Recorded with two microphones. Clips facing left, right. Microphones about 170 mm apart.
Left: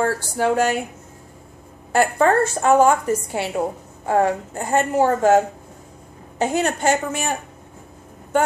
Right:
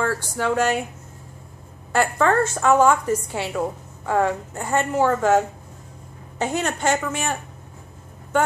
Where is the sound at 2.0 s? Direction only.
35° left (ahead or behind).